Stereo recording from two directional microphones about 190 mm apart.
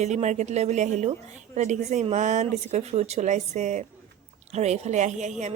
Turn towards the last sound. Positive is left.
turn(degrees=-40)  # may be behind; listen again after turning